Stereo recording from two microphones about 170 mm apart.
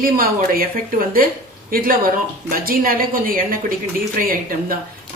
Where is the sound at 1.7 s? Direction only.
55° right (ahead or behind).